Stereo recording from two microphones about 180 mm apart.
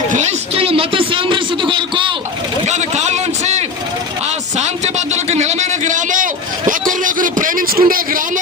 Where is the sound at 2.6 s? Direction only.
40° right (ahead or behind).